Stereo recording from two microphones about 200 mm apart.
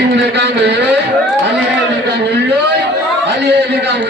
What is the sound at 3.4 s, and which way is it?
Speech, 60° right (ahead or behind).